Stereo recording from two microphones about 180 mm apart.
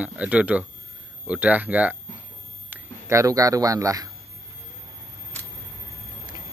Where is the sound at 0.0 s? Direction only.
5° right (ahead or behind).